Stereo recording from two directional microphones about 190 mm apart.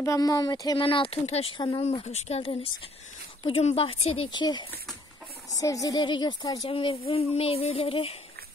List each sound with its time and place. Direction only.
0.0 s a woman's voice: 20° left (ahead or behind)